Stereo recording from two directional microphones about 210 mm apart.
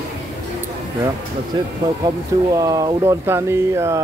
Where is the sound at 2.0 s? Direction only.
15° right (ahead or behind).